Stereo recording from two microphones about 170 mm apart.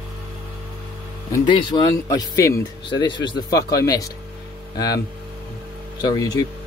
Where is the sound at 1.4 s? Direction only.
25° left (ahead or behind).